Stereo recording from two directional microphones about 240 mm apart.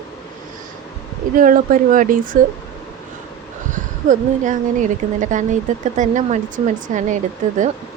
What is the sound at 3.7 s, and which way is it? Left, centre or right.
A woman's voice, right.